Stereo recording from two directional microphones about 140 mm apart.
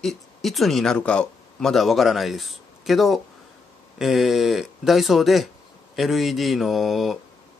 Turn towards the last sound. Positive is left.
turn(degrees=0)  # may be behind; listen again after turning